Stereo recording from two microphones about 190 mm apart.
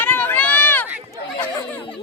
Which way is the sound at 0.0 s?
10° left (ahead or behind).